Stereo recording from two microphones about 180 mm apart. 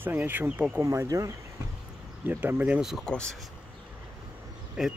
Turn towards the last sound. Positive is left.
turn(degrees=-5)  # may be behind; listen again after turning